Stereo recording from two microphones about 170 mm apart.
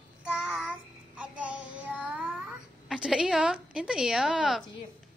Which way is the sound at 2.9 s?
5° right (ahead or behind).